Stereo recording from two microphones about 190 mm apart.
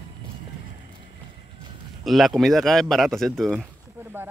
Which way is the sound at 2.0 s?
Centre (ahead or behind).